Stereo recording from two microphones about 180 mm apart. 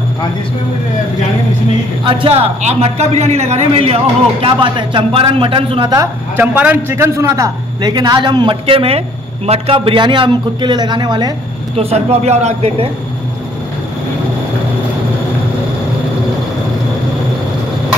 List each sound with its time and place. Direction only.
2.0 s a man's voice: 30° right (ahead or behind)
11.7 s a man's voice: 35° right (ahead or behind)